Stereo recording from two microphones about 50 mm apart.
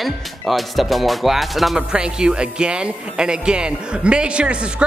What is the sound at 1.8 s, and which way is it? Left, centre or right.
A man's voice, centre.